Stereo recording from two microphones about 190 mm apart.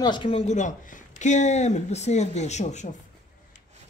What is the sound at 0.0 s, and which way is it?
Speech, 25° left (ahead or behind).